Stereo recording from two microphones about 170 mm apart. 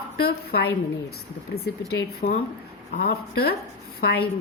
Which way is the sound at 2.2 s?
55° left (ahead or behind).